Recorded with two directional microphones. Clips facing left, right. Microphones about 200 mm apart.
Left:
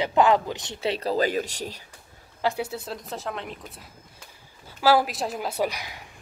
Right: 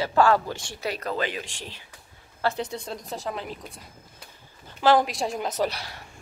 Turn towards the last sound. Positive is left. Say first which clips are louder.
# even
turn(degrees=15)  # may be behind; listen again after turning